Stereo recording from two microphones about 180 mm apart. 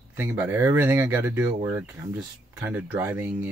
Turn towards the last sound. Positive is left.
turn(degrees=-10)  # may be behind; listen again after turning